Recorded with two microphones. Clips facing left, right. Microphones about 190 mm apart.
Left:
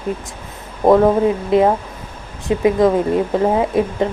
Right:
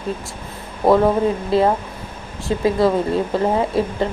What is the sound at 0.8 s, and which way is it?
A woman's voice, 10° left (ahead or behind).